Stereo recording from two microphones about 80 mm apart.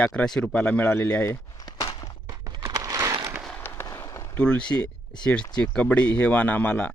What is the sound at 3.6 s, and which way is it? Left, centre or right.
Fireworks, left.